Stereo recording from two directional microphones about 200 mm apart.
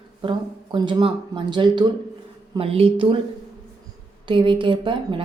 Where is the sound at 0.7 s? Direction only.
25° right (ahead or behind).